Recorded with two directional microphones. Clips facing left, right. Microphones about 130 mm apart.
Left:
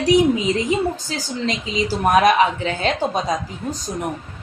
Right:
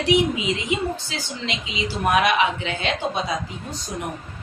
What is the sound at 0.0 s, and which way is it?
A woman's voice, 40° left (ahead or behind).